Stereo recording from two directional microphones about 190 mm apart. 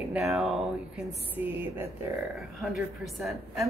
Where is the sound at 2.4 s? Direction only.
Centre (ahead or behind).